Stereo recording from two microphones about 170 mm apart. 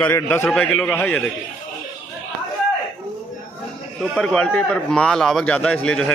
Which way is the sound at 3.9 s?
5° left (ahead or behind).